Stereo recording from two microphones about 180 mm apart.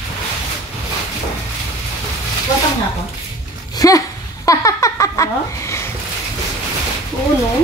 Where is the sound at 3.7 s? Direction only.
20° left (ahead or behind).